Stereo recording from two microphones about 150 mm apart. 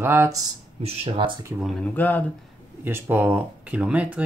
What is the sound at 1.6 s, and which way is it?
Speech, 10° left (ahead or behind).